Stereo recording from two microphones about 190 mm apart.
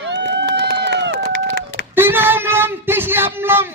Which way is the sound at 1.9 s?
10° right (ahead or behind).